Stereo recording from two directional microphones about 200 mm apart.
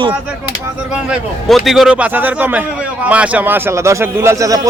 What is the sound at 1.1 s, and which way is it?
A man's voice, centre (ahead or behind).